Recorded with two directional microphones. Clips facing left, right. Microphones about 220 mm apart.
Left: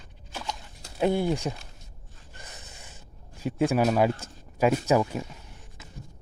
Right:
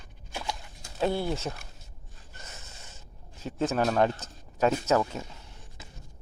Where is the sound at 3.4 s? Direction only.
10° left (ahead or behind).